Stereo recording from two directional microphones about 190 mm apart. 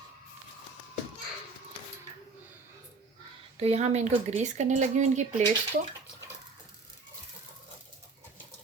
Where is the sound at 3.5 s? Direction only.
35° right (ahead or behind).